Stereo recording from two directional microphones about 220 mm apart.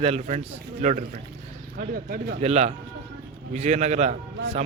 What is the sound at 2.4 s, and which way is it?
A man's voice, 30° right (ahead or behind).